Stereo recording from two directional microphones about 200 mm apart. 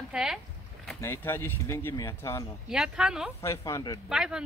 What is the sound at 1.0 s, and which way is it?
Speech, 10° left (ahead or behind).